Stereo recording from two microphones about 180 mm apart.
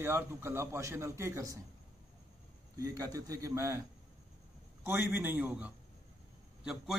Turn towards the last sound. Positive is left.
turn(degrees=-5)  # may be behind; listen again after turning